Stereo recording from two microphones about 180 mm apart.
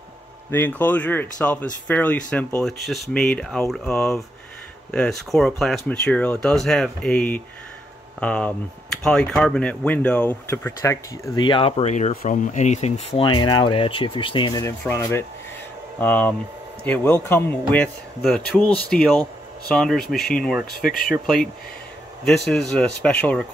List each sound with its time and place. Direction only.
0.5 s speech: 10° left (ahead or behind)
14.9 s speech: 15° left (ahead or behind)